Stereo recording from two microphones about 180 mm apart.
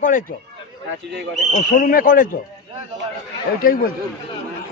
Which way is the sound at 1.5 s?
50° left (ahead or behind).